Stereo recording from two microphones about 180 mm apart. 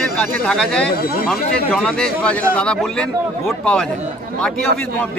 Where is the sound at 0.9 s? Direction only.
55° left (ahead or behind).